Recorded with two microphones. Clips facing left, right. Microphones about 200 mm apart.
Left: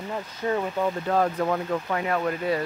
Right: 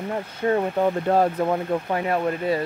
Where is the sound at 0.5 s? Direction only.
30° right (ahead or behind).